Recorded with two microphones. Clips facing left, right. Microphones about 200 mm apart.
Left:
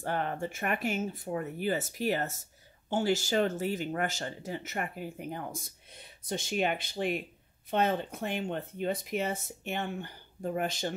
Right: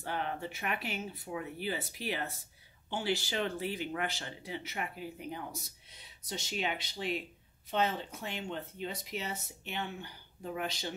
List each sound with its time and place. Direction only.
0.0 s speech: 50° left (ahead or behind)